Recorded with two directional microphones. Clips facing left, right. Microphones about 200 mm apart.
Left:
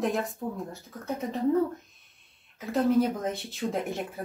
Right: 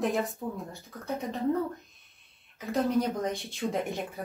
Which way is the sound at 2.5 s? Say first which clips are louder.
Left 3 dB; centre (ahead or behind).